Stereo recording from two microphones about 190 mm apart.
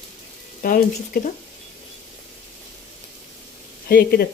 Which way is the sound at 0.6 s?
50° left (ahead or behind).